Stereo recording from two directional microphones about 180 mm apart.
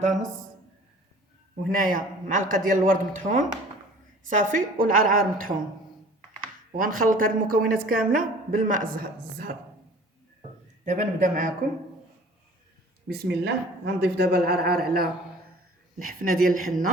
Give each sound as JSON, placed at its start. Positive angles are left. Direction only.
{"t": 0.0, "sound": "a man's voice", "side_deg": -40}
{"t": 1.7, "sound": "a woman's voice", "side_deg": -50}
{"t": 6.7, "sound": "a woman's voice", "side_deg": -50}
{"t": 10.8, "sound": "a woman's voice", "side_deg": -45}
{"t": 13.1, "sound": "a woman's voice", "side_deg": -65}